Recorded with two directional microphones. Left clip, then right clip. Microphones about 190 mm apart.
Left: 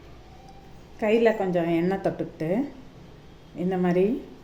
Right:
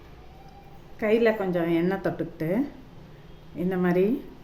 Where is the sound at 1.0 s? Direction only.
Centre (ahead or behind).